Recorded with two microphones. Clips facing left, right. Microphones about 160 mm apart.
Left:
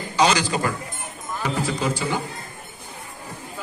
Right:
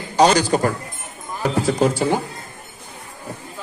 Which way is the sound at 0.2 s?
40° right (ahead or behind).